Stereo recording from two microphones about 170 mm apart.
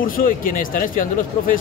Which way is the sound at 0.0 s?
55° left (ahead or behind).